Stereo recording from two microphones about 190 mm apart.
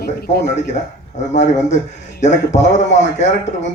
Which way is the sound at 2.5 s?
35° left (ahead or behind).